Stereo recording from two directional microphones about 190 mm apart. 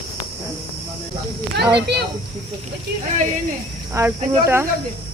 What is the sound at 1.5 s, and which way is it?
Speech, 60° right (ahead or behind).